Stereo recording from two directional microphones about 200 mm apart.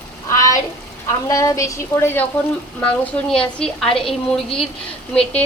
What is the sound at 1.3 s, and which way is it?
A woman's voice, 15° left (ahead or behind).